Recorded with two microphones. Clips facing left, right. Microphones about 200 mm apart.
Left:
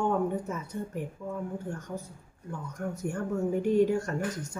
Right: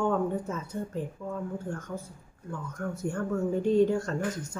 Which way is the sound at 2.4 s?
15° left (ahead or behind).